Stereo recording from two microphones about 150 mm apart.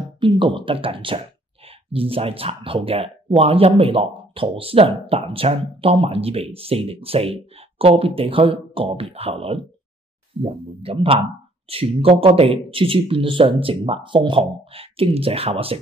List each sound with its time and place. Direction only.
0.2 s speech: 30° right (ahead or behind)